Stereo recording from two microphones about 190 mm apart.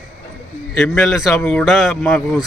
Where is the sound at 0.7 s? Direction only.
Centre (ahead or behind).